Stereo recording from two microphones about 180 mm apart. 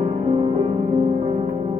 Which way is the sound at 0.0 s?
35° right (ahead or behind).